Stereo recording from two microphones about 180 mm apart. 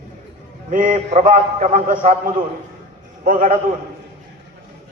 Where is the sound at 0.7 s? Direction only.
50° right (ahead or behind).